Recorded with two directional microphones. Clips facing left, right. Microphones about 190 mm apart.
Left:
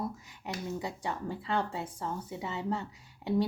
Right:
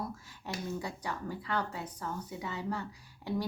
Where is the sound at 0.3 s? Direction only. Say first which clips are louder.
Left 1 dB; 20° left (ahead or behind).